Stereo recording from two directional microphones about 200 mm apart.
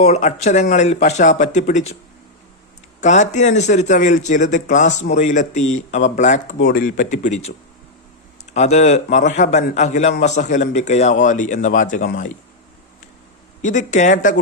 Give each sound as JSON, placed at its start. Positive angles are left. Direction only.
{"t": 0.0, "sound": "a man's voice", "side_deg": 35}
{"t": 3.0, "sound": "a man's voice", "side_deg": 35}
{"t": 8.5, "sound": "a man's voice", "side_deg": 35}
{"t": 13.6, "sound": "a man's voice", "side_deg": 40}